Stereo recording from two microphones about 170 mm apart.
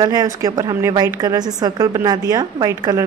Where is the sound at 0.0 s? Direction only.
20° right (ahead or behind).